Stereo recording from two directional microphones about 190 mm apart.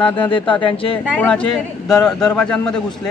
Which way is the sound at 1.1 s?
5° left (ahead or behind).